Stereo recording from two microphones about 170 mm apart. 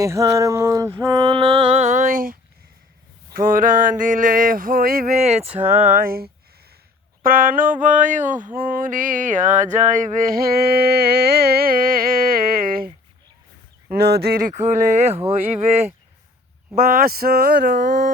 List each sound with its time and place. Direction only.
0.0 s a sound: 20° right (ahead or behind); by 2.4 s 55° right (ahead or behind)
3.3 s mantra: 55° right (ahead or behind)
5.2 s speech: 35° right (ahead or behind)
5.5 s speech: 10° right (ahead or behind)
6.0 s mantra: 60° right (ahead or behind)
13.9 s speech: 70° right (ahead or behind)
14.5 s speech: 45° right (ahead or behind)
16.7 s mantra: 60° right (ahead or behind)